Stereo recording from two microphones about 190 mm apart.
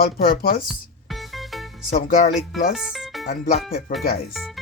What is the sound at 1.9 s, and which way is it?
Speech, 45° left (ahead or behind).